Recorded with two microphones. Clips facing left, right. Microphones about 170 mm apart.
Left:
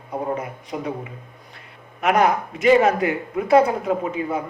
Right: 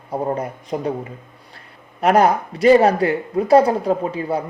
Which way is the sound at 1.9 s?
35° right (ahead or behind).